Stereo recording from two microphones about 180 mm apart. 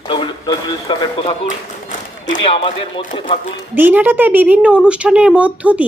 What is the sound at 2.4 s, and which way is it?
Speech, 30° left (ahead or behind).